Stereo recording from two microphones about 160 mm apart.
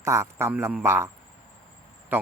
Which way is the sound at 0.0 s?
15° right (ahead or behind).